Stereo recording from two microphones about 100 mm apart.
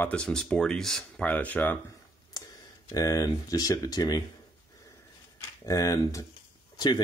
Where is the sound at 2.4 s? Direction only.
40° left (ahead or behind).